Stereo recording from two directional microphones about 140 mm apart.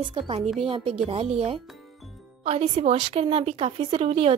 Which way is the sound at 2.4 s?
50° right (ahead or behind).